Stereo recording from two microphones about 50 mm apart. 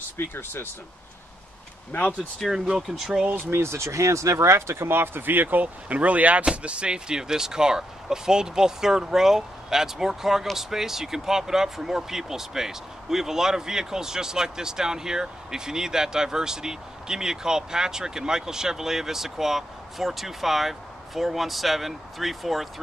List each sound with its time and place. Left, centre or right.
0.3 s speech: left
1.9 s speech: left
2.4 s speech: centre
3.0 s speech: centre
3.3 s speech: right
3.5 s speech: right; by 22.7 s centre